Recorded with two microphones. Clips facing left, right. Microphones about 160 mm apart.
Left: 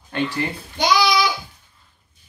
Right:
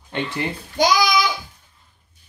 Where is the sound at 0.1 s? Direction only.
20° right (ahead or behind).